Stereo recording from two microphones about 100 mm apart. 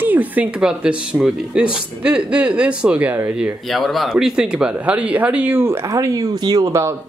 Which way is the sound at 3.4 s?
Centre (ahead or behind).